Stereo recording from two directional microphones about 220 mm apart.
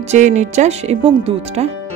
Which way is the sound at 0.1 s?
35° right (ahead or behind).